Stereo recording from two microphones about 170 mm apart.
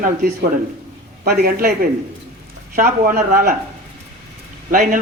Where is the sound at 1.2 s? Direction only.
60° right (ahead or behind).